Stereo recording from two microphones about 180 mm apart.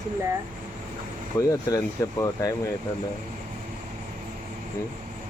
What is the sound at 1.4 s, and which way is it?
Speech, 20° left (ahead or behind).